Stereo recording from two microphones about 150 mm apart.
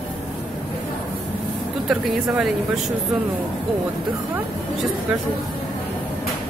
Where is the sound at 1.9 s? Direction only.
Centre (ahead or behind).